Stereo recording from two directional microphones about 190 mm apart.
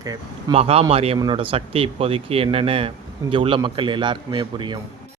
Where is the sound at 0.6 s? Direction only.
30° right (ahead or behind).